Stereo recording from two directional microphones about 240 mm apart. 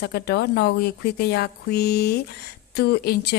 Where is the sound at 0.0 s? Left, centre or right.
Left.